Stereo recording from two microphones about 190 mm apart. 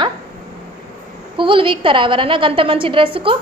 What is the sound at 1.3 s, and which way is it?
A woman's voice, 25° right (ahead or behind).